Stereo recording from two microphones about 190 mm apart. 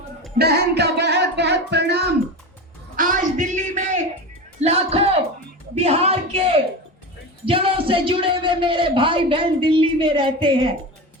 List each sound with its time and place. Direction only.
0.3 s music: 60° right (ahead or behind)
2.9 s a man's voice: 45° right (ahead or behind); by 10.8 s 25° right (ahead or behind)